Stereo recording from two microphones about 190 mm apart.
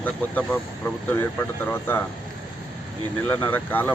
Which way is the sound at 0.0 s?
10° left (ahead or behind).